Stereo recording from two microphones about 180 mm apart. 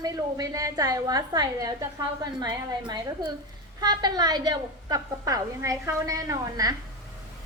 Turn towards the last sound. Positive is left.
turn(degrees=-20)  # may be behind; listen again after turning